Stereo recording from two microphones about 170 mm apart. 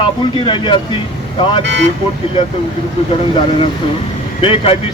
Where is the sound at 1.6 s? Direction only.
90° right.